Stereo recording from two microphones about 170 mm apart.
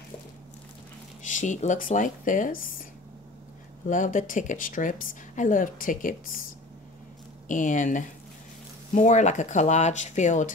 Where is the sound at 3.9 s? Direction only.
50° left (ahead or behind).